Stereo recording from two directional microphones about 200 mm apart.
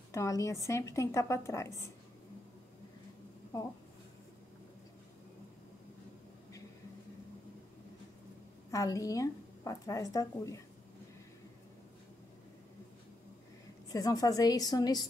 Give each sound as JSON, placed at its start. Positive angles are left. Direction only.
{"t": 0.1, "sound": "a woman's voice", "side_deg": 15}
{"t": 8.7, "sound": "a woman's voice", "side_deg": 15}
{"t": 13.9, "sound": "a woman's voice", "side_deg": 15}